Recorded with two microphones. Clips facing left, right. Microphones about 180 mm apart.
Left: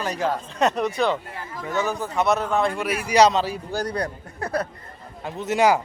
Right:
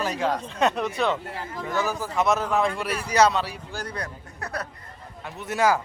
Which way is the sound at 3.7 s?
35° left (ahead or behind).